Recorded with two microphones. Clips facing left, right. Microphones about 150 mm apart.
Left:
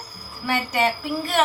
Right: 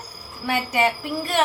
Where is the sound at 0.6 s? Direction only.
5° right (ahead or behind).